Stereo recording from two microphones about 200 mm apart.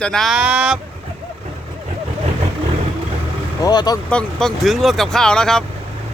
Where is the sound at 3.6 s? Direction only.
20° left (ahead or behind).